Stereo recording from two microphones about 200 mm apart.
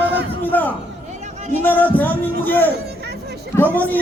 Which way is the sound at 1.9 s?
10° left (ahead or behind).